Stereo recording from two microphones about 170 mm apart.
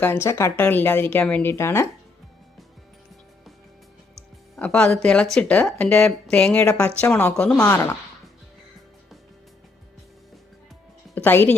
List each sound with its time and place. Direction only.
0.0 s a woman's voice: 15° left (ahead or behind)
4.5 s a woman's voice: 5° left (ahead or behind)
7.6 s a woman's voice: 15° left (ahead or behind)
11.1 s speech: 10° left (ahead or behind)